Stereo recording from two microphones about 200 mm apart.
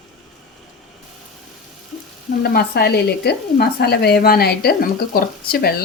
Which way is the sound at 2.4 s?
50° left (ahead or behind).